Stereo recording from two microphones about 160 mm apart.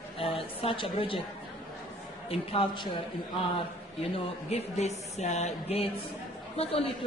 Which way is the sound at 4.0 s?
40° left (ahead or behind).